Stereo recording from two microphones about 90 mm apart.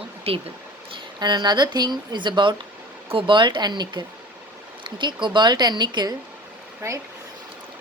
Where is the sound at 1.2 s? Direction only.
55° right (ahead or behind).